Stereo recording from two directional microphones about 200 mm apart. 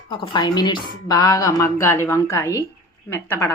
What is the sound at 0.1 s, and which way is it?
Speech, 25° left (ahead or behind).